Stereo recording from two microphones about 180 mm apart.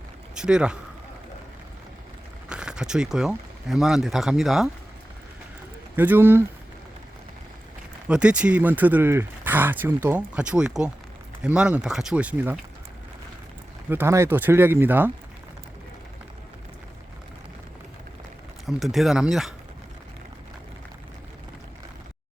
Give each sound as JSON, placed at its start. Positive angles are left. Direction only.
{"t": 0.3, "sound": "speech", "side_deg": -5}
{"t": 2.5, "sound": "speech", "side_deg": -5}
{"t": 6.0, "sound": "speech", "side_deg": -10}
{"t": 8.0, "sound": "speech", "side_deg": -5}
{"t": 13.9, "sound": "speech", "side_deg": -15}
{"t": 18.6, "sound": "speech", "side_deg": 0}